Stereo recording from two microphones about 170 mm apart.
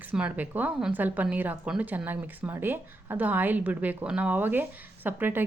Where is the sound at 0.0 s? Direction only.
5° right (ahead or behind).